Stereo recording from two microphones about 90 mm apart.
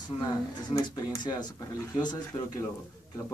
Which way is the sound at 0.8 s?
50° left (ahead or behind).